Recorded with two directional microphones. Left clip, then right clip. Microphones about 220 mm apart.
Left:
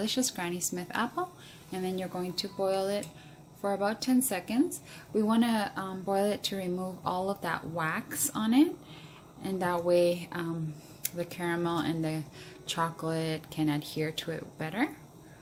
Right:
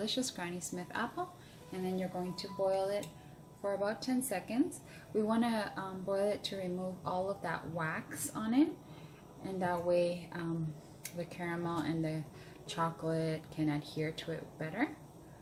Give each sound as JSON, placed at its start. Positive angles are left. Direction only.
{"t": 0.0, "sound": "speech", "side_deg": 30}